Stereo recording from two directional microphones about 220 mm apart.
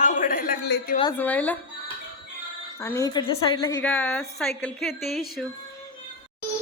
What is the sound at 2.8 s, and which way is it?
A woman's voice, 10° left (ahead or behind).